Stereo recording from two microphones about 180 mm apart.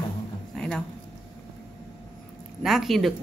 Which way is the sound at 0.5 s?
Centre (ahead or behind).